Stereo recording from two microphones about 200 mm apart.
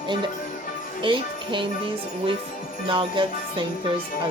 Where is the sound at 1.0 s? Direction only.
25° right (ahead or behind).